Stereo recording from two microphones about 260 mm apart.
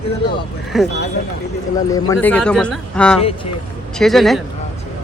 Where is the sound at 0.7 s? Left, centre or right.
Centre.